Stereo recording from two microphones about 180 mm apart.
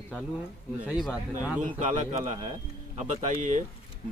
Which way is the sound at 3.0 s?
45° right (ahead or behind).